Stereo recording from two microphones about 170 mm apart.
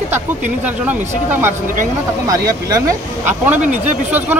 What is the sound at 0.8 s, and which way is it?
Speech, 10° right (ahead or behind).